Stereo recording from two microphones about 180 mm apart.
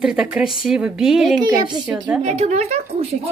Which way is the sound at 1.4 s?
25° right (ahead or behind).